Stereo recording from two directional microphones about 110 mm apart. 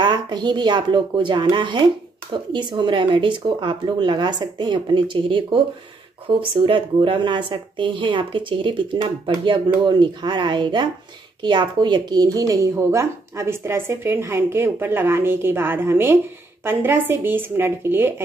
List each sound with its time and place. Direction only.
0.0 s a woman's voice: 45° right (ahead or behind); by 18.1 s 20° right (ahead or behind)